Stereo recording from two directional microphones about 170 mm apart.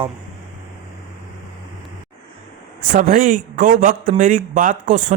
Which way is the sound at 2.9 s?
50° right (ahead or behind).